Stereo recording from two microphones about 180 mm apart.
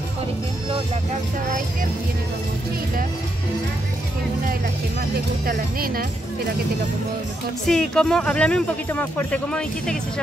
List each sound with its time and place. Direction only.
5.5 s speech: 55° right (ahead or behind)
7.6 s speech: 5° left (ahead or behind)